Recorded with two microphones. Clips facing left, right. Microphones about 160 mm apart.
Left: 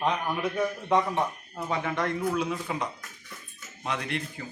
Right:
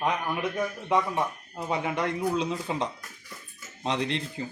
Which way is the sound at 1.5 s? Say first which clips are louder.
Right 1 dB; 15° right (ahead or behind).